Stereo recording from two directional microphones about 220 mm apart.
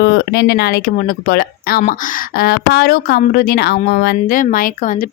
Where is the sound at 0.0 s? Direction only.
50° left (ahead or behind).